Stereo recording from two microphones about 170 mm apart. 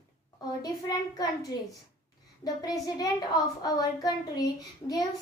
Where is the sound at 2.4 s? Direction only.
20° left (ahead or behind).